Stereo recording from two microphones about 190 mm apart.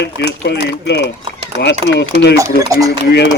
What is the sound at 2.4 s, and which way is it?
Speech, 15° right (ahead or behind).